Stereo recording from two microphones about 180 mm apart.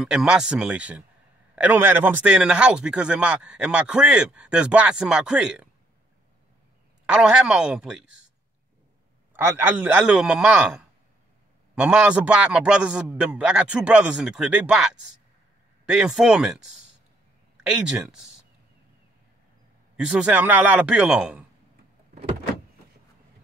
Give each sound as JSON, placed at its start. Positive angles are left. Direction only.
{"t": 0.0, "sound": "a man's voice", "side_deg": -5}
{"t": 7.1, "sound": "a man's voice", "side_deg": -5}
{"t": 9.3, "sound": "a man's voice", "side_deg": -10}
{"t": 17.6, "sound": "a man's voice", "side_deg": -5}
{"t": 20.0, "sound": "a man's voice", "side_deg": -5}